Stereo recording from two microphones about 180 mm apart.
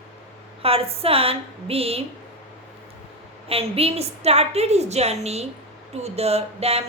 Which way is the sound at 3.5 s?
35° right (ahead or behind).